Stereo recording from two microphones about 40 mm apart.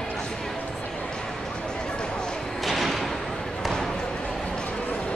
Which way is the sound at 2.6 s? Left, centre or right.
Centre.